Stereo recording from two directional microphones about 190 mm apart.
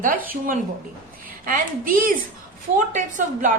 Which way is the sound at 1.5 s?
45° right (ahead or behind).